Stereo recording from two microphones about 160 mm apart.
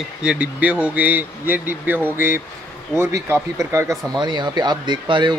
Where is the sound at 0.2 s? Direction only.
5° right (ahead or behind).